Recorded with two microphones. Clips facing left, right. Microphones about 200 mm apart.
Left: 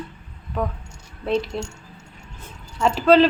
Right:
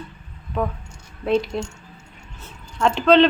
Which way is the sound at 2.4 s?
5° left (ahead or behind).